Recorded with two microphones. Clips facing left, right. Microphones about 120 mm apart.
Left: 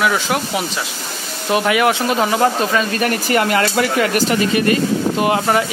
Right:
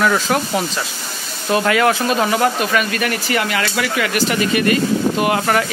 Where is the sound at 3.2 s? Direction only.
45° left (ahead or behind).